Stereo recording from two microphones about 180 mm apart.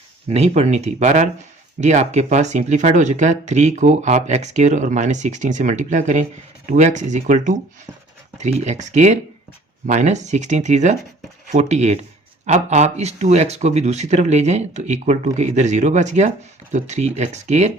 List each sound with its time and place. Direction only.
0.3 s speech: 35° right (ahead or behind)